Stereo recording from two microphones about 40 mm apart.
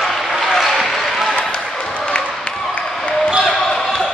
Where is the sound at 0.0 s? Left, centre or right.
Centre.